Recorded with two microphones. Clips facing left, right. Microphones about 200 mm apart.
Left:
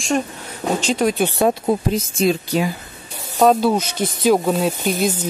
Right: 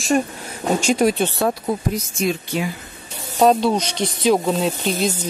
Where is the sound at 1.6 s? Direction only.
30° left (ahead or behind).